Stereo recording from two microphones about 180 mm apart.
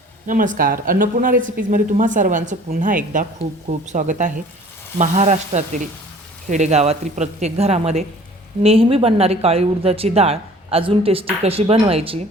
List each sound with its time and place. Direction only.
0.3 s speech: 45° right (ahead or behind)